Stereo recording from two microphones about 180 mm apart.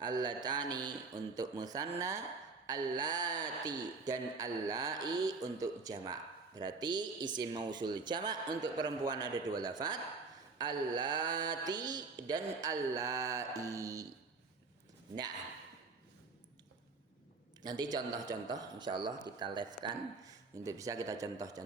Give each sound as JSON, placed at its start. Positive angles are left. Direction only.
{"t": 0.0, "sound": "mantra", "side_deg": -25}
{"t": 0.4, "sound": "speech", "side_deg": -25}
{"t": 12.6, "sound": "music", "side_deg": -20}
{"t": 17.6, "sound": "a man's voice", "side_deg": -25}